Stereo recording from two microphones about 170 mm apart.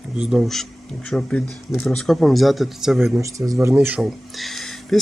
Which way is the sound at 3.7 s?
5° right (ahead or behind).